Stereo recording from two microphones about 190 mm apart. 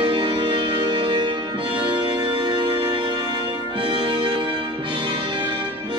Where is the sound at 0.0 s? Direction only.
25° right (ahead or behind).